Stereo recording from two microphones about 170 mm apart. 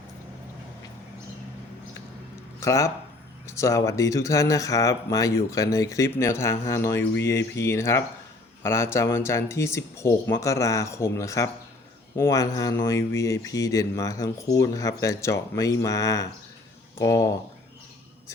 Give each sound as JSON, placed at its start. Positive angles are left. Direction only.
{"t": 2.6, "sound": "speech", "side_deg": 20}